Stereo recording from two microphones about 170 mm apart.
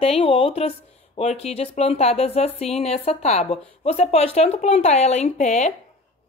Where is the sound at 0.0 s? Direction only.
35° left (ahead or behind).